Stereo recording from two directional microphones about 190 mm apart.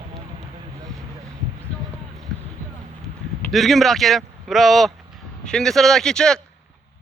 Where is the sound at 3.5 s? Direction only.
Centre (ahead or behind).